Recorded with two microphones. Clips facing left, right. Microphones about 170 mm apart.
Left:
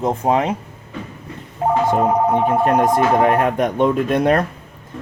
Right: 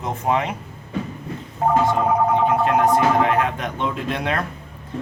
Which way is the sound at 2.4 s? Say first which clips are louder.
Left 2 dB; 45° left (ahead or behind).